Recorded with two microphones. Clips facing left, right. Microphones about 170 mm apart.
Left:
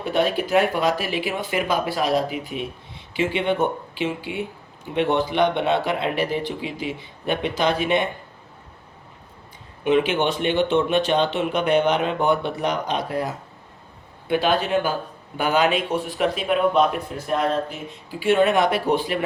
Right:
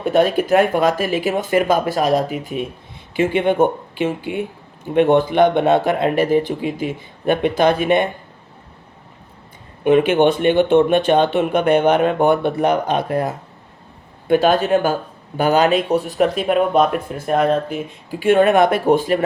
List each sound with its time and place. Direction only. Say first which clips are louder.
0.0 s speech: right 6 dB; 45° right (ahead or behind)
9.8 s speech: right 6 dB; 50° right (ahead or behind)
17.2 s speech: right 6 dB; 55° right (ahead or behind)